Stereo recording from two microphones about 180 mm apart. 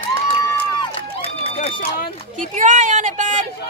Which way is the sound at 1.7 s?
55° left (ahead or behind).